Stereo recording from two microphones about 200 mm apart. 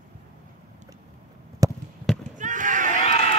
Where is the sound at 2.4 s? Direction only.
40° right (ahead or behind).